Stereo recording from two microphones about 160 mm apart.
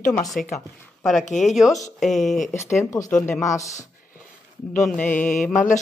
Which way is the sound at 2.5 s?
15° left (ahead or behind).